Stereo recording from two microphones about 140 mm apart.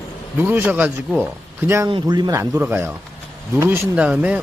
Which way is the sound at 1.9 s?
30° right (ahead or behind).